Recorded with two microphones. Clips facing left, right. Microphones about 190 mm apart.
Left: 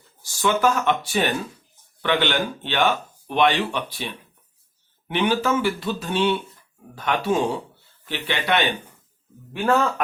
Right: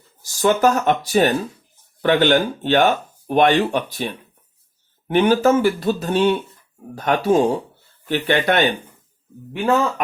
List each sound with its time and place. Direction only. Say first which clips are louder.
0.2 s speech: right 4 dB; 45° right (ahead or behind)